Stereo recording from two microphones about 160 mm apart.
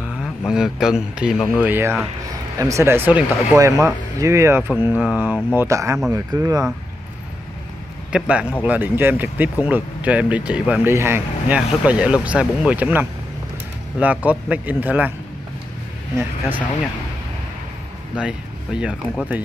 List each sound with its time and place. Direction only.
0.0 s speech: centre (ahead or behind); by 6.6 s 20° right (ahead or behind)
8.1 s speech: 5° right (ahead or behind)
16.2 s speech: 10° right (ahead or behind)
18.1 s speech: 5° right (ahead or behind)